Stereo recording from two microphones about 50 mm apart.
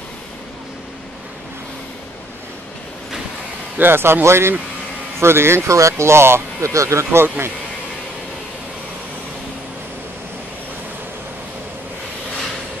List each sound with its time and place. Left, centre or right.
3.7 s speech: right
5.7 s speech: right
6.6 s speech: right